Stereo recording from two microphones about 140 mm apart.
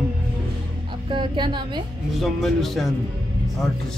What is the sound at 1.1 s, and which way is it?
Speech, 35° right (ahead or behind).